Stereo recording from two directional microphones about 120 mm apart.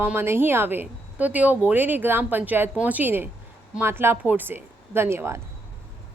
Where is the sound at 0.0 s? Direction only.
20° right (ahead or behind).